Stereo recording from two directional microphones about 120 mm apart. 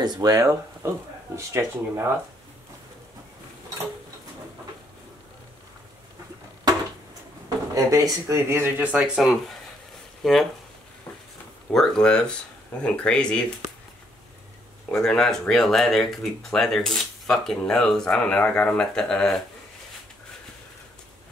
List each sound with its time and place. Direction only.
0.0 s speech: 35° right (ahead or behind)
7.4 s speech: 30° right (ahead or behind); by 10.4 s 5° left (ahead or behind)
11.7 s speech: 5° left (ahead or behind)
14.9 s speech: 5° left (ahead or behind)